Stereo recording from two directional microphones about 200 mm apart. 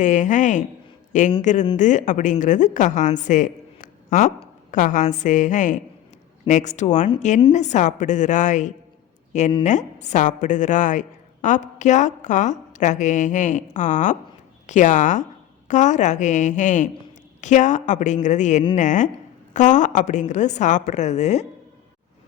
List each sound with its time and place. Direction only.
0.0 s a woman's voice: 40° left (ahead or behind)